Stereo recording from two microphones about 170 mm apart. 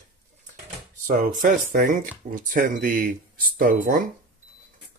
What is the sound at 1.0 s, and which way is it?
Speech, 50° right (ahead or behind).